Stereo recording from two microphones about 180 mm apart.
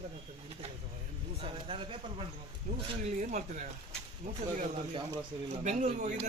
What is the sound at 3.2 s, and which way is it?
Speech, 40° right (ahead or behind).